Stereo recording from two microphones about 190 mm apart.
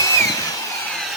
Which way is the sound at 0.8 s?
Centre (ahead or behind).